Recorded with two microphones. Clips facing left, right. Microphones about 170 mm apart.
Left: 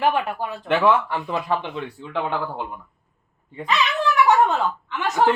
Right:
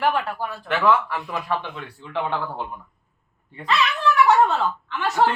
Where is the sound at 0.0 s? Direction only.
15° left (ahead or behind).